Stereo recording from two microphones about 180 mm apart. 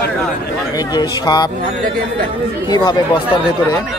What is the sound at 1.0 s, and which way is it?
Speech, 25° left (ahead or behind).